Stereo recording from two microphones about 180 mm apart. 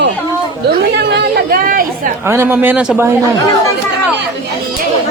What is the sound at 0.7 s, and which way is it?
Chatter, 65° right (ahead or behind).